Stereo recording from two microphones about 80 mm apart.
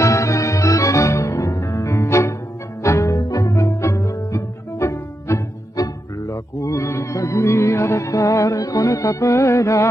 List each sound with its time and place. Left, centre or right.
0.0 s music: left